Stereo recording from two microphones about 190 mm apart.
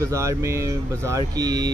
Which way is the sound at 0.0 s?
15° right (ahead or behind).